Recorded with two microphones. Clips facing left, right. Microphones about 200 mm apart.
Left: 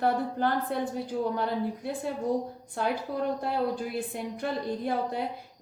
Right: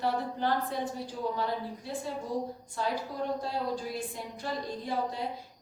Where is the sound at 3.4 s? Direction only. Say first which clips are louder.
Left 4 dB; 60° left (ahead or behind).